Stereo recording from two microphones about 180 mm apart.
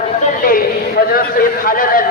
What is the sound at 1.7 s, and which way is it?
Speech, 50° left (ahead or behind).